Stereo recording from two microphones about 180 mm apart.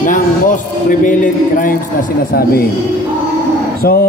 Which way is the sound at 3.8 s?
60° left (ahead or behind).